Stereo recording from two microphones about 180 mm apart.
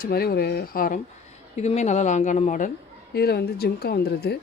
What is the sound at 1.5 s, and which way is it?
Speech, 40° left (ahead or behind).